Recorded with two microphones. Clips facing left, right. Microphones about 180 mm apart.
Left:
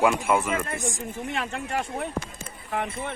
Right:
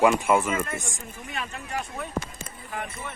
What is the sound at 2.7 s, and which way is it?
Speech, 65° left (ahead or behind).